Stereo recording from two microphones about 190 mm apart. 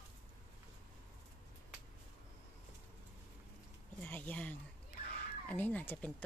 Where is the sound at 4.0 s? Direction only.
10° left (ahead or behind).